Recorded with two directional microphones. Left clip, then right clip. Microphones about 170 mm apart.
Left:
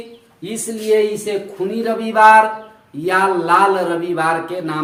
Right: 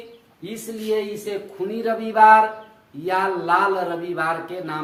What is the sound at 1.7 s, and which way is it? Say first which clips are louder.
Speech: left 4 dB; 15° left (ahead or behind).